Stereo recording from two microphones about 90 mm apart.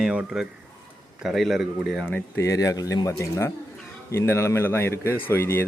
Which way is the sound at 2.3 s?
35° left (ahead or behind).